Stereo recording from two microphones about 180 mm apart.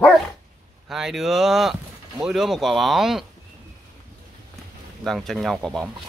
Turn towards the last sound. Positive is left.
turn(degrees=0)  # may be behind; listen again after turning